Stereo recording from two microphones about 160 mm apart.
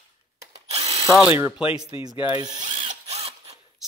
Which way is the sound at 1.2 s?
15° right (ahead or behind).